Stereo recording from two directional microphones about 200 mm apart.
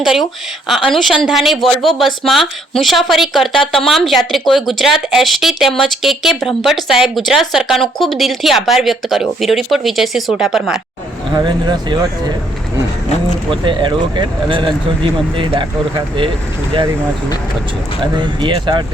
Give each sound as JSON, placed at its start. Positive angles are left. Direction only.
{"t": 0.0, "sound": "a woman's voice", "side_deg": 0}
{"t": 11.3, "sound": "speech", "side_deg": -20}
{"t": 13.5, "sound": "speech", "side_deg": -25}
{"t": 18.0, "sound": "speech", "side_deg": -25}